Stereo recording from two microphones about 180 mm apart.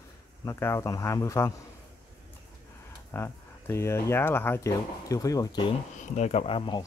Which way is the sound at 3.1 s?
15° left (ahead or behind).